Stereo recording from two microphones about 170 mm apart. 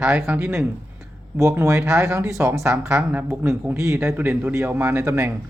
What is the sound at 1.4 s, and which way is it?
Speech, 15° right (ahead or behind).